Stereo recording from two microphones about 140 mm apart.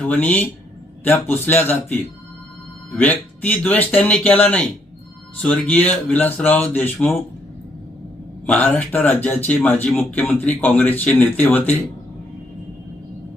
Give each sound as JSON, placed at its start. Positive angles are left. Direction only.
{"t": 0.0, "sound": "speech", "side_deg": 10}
{"t": 8.4, "sound": "speech", "side_deg": 10}